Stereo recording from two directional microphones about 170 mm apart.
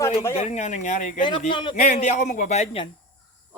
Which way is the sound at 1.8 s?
40° left (ahead or behind).